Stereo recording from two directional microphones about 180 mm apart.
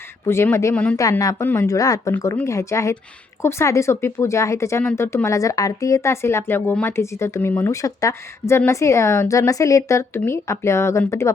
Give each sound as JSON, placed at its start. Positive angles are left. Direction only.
{"t": 0.3, "sound": "speech", "side_deg": 15}